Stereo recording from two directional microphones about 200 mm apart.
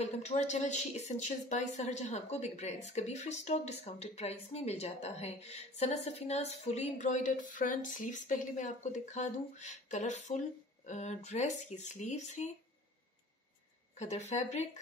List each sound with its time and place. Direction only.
0.0 s a woman's voice: 35° left (ahead or behind)
13.9 s a woman's voice: 35° left (ahead or behind)